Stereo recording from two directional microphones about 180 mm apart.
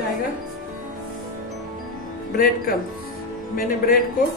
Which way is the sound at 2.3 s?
50° left (ahead or behind).